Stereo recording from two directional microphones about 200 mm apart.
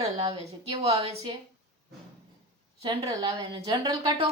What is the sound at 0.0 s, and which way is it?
A woman's voice, 30° right (ahead or behind).